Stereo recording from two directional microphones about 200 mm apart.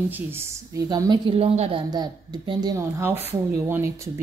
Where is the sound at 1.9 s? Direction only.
20° right (ahead or behind).